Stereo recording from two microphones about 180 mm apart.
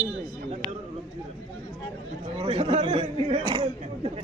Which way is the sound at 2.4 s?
35° right (ahead or behind).